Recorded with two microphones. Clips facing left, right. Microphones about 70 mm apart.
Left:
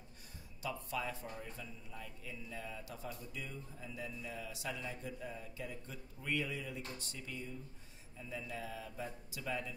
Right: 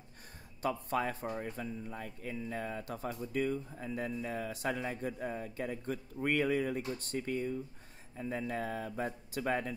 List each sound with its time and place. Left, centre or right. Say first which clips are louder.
0.6 s speech: right 8 dB; right